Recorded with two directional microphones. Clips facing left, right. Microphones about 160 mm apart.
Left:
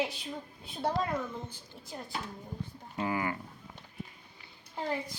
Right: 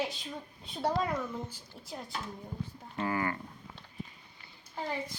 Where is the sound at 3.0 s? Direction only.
15° left (ahead or behind).